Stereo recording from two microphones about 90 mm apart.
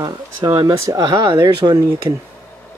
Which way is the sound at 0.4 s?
55° right (ahead or behind).